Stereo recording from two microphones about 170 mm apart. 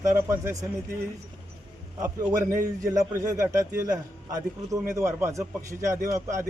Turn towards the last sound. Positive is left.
turn(degrees=-15)  # may be behind; listen again after turning